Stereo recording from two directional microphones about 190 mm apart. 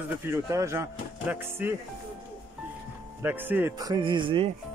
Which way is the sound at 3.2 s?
10° right (ahead or behind).